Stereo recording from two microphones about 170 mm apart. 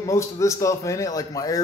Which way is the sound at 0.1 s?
20° left (ahead or behind).